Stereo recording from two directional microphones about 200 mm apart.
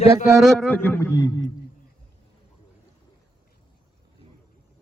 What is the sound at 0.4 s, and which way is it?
A man's voice, 5° left (ahead or behind).